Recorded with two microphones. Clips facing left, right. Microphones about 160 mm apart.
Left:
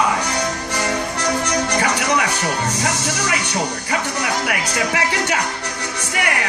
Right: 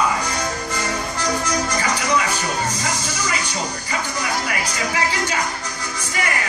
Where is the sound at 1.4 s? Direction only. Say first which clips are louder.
Left 3 dB; 70° left (ahead or behind).